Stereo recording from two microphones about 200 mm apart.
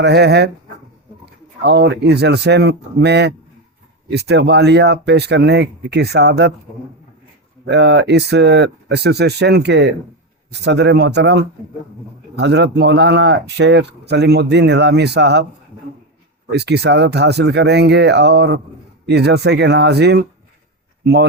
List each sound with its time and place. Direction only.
0.0 s speech: 55° right (ahead or behind)
7.6 s speech: 60° right (ahead or behind)
16.5 s speech: 55° right (ahead or behind)